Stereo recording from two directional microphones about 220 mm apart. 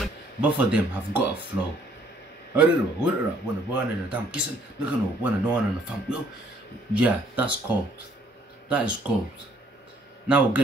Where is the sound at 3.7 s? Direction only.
5° right (ahead or behind).